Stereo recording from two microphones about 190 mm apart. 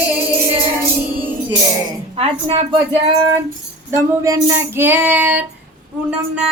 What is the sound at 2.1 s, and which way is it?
Speech, 30° right (ahead or behind).